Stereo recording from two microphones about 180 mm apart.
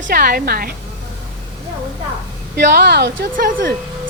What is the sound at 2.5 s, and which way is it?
Speech, 65° right (ahead or behind).